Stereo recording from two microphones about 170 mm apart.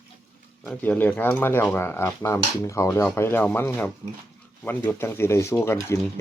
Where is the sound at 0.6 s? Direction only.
10° left (ahead or behind).